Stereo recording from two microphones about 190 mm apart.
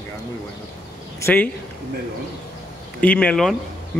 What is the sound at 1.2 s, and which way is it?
Speech, 10° left (ahead or behind).